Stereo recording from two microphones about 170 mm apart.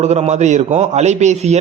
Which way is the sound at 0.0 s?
40° right (ahead or behind).